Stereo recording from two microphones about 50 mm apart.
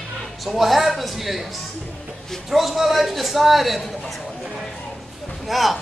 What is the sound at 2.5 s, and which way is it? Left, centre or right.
A man's voice, centre.